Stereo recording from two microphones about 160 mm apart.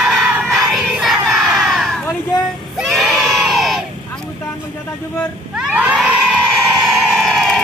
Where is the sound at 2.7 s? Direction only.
Centre (ahead or behind).